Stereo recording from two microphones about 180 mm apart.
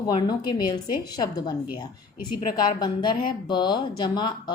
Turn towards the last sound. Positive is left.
turn(degrees=25)  # may be behind; listen again after turning